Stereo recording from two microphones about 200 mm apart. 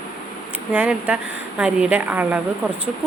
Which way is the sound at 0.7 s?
10° right (ahead or behind).